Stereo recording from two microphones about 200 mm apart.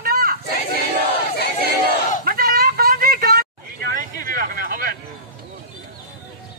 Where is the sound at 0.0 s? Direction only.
45° right (ahead or behind).